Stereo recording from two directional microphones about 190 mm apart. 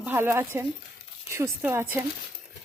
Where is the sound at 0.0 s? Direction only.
10° right (ahead or behind).